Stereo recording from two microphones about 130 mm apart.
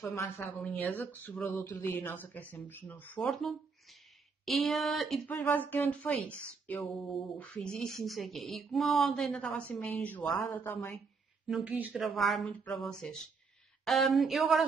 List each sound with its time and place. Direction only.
0.0 s a woman's voice: 20° left (ahead or behind); by 5.2 s centre (ahead or behind)
5.3 s speech: 15° left (ahead or behind)
7.0 s speech: centre (ahead or behind); by 11.0 s 20° left (ahead or behind)
11.4 s speech: 5° right (ahead or behind)
12.2 s speech: centre (ahead or behind)